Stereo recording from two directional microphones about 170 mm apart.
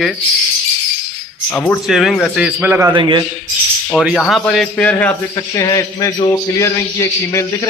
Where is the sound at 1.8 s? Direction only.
Centre (ahead or behind).